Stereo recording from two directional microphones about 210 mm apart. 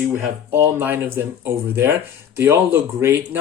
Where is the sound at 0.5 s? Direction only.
10° right (ahead or behind).